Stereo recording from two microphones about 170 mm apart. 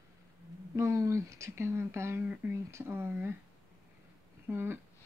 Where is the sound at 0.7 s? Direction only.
15° right (ahead or behind).